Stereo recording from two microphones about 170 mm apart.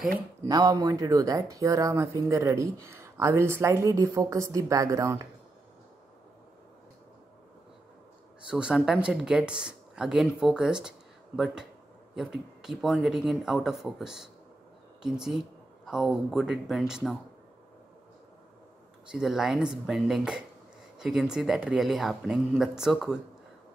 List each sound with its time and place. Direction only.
0.5 s speech: 20° right (ahead or behind)
8.5 s speech: 5° right (ahead or behind)
19.0 s speech: 5° right (ahead or behind)